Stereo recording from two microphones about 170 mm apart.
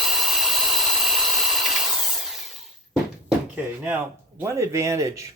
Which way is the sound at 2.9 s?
5° right (ahead or behind).